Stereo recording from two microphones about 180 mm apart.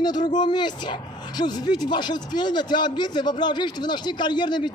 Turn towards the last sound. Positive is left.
turn(degrees=25)  # may be behind; listen again after turning